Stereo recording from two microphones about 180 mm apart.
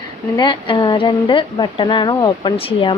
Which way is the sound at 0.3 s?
25° left (ahead or behind).